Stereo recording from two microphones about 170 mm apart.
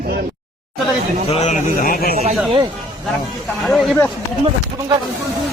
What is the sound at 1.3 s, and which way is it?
Speech, 40° left (ahead or behind).